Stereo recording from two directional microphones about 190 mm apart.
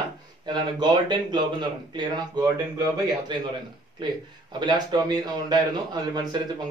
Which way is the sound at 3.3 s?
25° right (ahead or behind).